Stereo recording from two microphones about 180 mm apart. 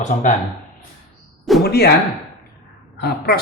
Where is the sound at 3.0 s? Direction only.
60° left (ahead or behind).